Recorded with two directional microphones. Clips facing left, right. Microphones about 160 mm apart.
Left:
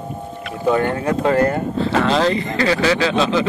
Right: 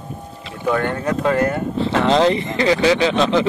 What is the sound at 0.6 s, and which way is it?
Speech, 10° left (ahead or behind).